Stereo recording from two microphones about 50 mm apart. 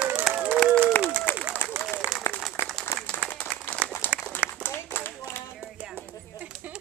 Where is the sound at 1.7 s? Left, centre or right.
Right.